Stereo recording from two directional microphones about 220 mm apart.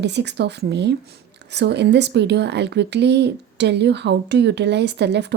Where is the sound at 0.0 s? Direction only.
50° right (ahead or behind).